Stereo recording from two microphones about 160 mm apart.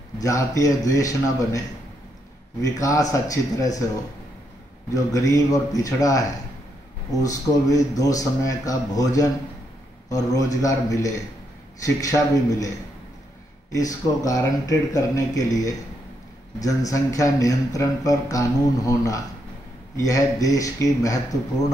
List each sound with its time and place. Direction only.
0.2 s a man's voice: 20° left (ahead or behind)
2.6 s a man's voice: 20° left (ahead or behind)
4.9 s a man's voice: 20° left (ahead or behind)